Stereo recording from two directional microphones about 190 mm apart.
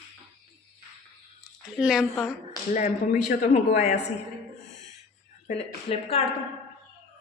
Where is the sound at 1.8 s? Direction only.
5° right (ahead or behind).